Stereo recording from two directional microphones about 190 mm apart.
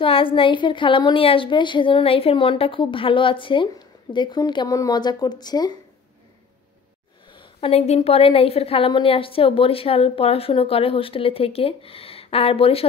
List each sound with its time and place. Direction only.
0.0 s a woman's voice: 30° left (ahead or behind)
7.3 s a woman's voice: 30° left (ahead or behind)